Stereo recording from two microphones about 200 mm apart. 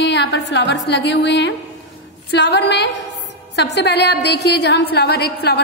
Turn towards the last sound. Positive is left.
turn(degrees=55)  # may be behind; listen again after turning